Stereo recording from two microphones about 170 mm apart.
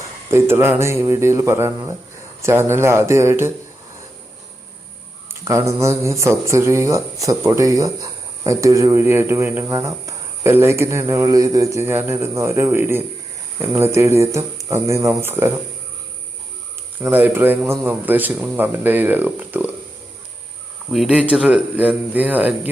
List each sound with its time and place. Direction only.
0.0 s speech: 15° right (ahead or behind)
5.3 s speech: 15° right (ahead or behind)
17.0 s speech: 10° right (ahead or behind)
20.9 s speech: 5° right (ahead or behind)